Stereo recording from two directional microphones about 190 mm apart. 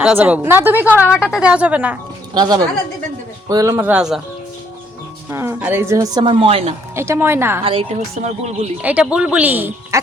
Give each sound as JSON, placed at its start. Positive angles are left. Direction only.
{"t": 0.0, "sound": "speech", "side_deg": -5}
{"t": 2.3, "sound": "speech", "side_deg": -20}
{"t": 5.3, "sound": "speech", "side_deg": -15}
{"t": 6.9, "sound": "speech", "side_deg": -15}
{"t": 7.6, "sound": "a woman's voice", "side_deg": -30}
{"t": 8.8, "sound": "speech", "side_deg": -5}